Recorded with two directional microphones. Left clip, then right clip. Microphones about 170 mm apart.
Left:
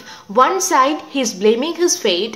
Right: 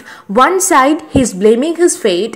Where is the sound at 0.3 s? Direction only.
30° right (ahead or behind).